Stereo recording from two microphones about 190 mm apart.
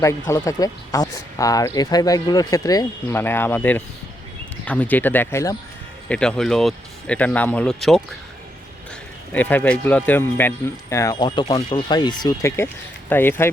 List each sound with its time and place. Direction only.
0.0 s speech: 15° left (ahead or behind)
6.1 s speech: 5° left (ahead or behind)
9.3 s speech: 10° left (ahead or behind)